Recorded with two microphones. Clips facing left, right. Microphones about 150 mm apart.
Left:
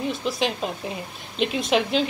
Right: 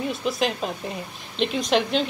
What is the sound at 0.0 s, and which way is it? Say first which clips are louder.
A woman's voice: even; centre (ahead or behind).